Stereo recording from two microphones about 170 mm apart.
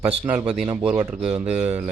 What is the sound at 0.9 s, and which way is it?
Speech, 10° right (ahead or behind).